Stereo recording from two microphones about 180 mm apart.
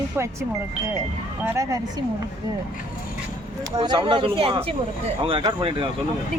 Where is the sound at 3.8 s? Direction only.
25° right (ahead or behind).